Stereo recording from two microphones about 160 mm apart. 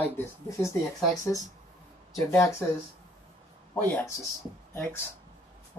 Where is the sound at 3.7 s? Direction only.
10° left (ahead or behind).